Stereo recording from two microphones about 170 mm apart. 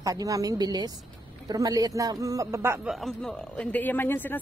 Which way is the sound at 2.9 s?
Centre (ahead or behind).